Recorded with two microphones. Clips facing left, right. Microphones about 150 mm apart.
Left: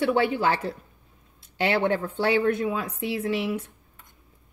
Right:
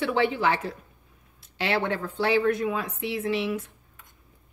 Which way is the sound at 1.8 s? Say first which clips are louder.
Left 3 dB; 30° left (ahead or behind).